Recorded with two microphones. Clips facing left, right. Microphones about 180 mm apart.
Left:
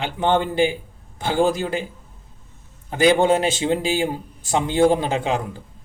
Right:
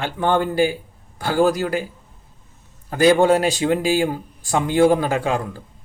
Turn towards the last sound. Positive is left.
turn(degrees=20)  # may be behind; listen again after turning